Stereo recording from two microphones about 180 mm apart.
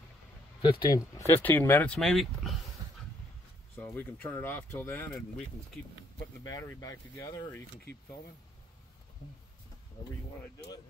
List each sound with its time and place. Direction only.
0.6 s speech: 25° left (ahead or behind); by 2.5 s centre (ahead or behind)
3.7 s speech: 10° left (ahead or behind)
6.5 s speech: 15° left (ahead or behind)